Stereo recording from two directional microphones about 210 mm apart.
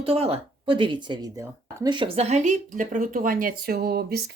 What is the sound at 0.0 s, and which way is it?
A woman's voice, 25° right (ahead or behind).